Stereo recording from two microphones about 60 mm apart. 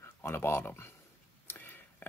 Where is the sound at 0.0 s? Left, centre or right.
Left.